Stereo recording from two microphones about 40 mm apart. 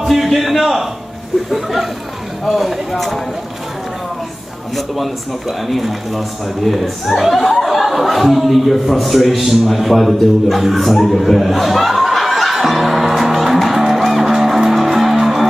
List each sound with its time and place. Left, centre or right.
0.0 s a man's voice: centre
4.7 s speech: centre